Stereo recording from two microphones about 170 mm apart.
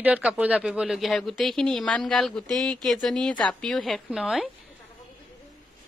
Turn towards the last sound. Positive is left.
turn(degrees=0)  # may be behind; listen again after turning